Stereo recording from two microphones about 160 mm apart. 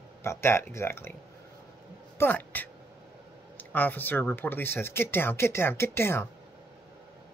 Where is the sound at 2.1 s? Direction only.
10° left (ahead or behind).